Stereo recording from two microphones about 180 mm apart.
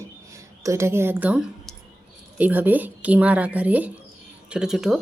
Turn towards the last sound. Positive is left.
turn(degrees=-5)  # may be behind; listen again after turning